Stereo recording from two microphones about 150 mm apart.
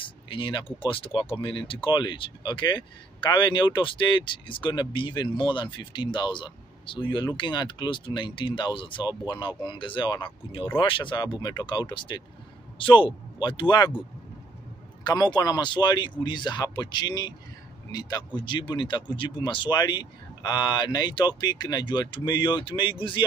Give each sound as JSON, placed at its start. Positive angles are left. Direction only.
{"t": 0.0, "sound": "speech", "side_deg": 30}
{"t": 15.0, "sound": "speech", "side_deg": 30}